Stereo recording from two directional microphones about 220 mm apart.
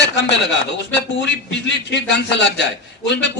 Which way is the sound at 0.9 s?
55° left (ahead or behind).